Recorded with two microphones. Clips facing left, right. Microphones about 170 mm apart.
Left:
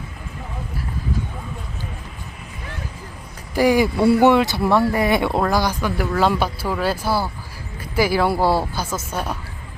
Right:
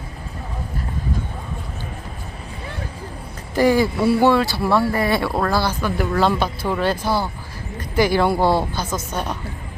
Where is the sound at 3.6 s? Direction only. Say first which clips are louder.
Even; 15° left (ahead or behind).